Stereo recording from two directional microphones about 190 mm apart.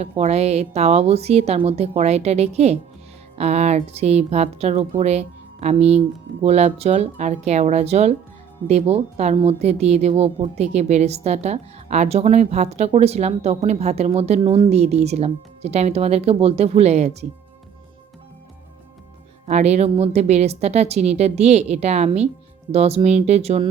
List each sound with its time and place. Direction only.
0.0 s a woman's voice: 35° right (ahead or behind)
19.5 s a woman's voice: 35° right (ahead or behind)